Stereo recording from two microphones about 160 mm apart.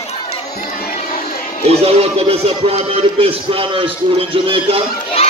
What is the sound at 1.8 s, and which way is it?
Speech, 40° right (ahead or behind).